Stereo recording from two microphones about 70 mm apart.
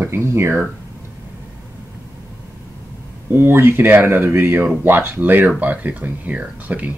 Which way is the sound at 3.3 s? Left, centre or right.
Right.